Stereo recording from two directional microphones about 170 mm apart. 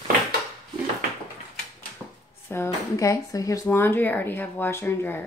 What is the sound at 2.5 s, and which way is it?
Speech, 15° left (ahead or behind).